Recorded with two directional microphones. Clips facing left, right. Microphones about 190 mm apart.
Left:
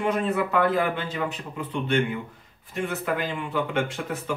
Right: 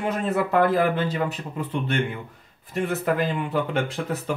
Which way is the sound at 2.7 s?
40° right (ahead or behind).